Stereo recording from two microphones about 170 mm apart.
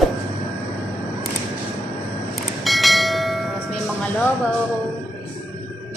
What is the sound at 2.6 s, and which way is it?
Bell, centre (ahead or behind).